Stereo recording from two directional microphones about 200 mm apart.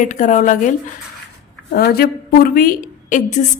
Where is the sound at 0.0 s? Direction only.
40° left (ahead or behind).